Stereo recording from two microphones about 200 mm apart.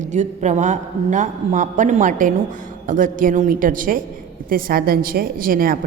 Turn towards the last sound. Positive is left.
turn(degrees=-45)  # may be behind; listen again after turning